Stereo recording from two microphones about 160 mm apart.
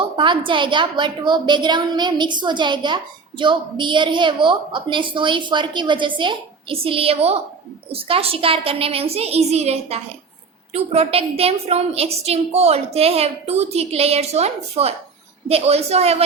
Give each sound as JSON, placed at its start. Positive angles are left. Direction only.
{"t": 0.2, "sound": "a woman's voice", "side_deg": -30}